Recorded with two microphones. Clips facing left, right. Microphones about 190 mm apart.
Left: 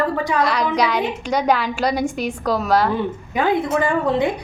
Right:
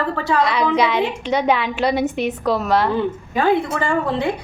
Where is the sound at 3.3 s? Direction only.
15° left (ahead or behind).